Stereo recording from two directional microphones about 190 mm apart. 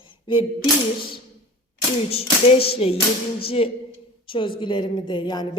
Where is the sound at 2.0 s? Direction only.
30° left (ahead or behind).